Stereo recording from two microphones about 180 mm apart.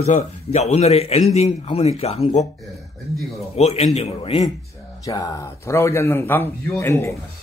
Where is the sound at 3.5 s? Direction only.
35° left (ahead or behind).